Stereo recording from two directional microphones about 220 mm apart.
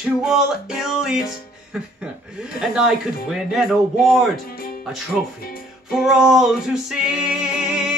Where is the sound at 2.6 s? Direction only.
Centre (ahead or behind).